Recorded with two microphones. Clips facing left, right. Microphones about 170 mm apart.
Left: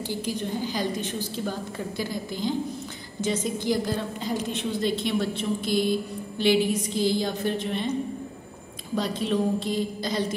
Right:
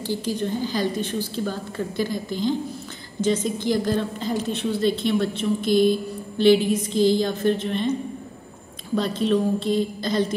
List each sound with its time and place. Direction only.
0.1 s a woman's voice: 15° left (ahead or behind)
8.9 s a woman's voice: 10° left (ahead or behind)